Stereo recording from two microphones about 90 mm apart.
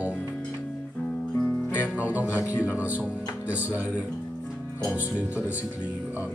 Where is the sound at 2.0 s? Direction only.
15° right (ahead or behind).